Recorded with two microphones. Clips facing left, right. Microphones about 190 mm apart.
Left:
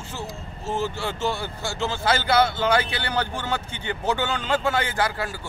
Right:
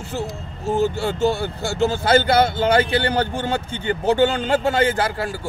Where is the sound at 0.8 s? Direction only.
55° right (ahead or behind).